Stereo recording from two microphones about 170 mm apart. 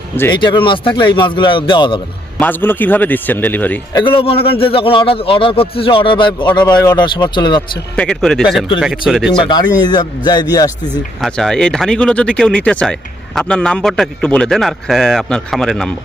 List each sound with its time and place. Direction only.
0.3 s speech: 25° left (ahead or behind)
2.4 s a man's voice: 10° left (ahead or behind)
3.9 s a man's voice: 30° left (ahead or behind)
7.9 s speech: 5° left (ahead or behind)
9.3 s speech: 25° left (ahead or behind)
11.2 s speech: centre (ahead or behind)